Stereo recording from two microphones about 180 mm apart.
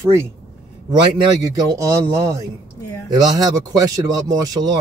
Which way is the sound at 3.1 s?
20° right (ahead or behind).